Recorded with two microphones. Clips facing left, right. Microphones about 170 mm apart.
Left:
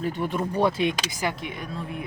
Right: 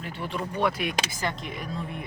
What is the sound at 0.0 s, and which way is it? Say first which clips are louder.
Speech: left 6 dB; 45° left (ahead or behind).